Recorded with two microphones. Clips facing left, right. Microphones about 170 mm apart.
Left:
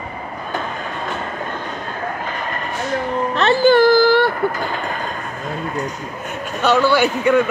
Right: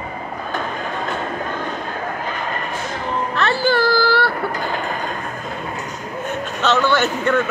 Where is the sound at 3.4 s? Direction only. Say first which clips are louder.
Left 6 dB; 20° left (ahead or behind).